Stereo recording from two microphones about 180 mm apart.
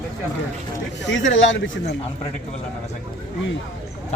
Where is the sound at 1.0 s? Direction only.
90° left.